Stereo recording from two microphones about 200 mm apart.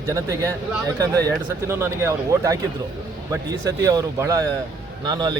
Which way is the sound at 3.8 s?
15° right (ahead or behind).